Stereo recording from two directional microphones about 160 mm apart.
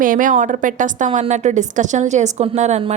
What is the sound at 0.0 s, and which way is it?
A woman's voice, 55° right (ahead or behind).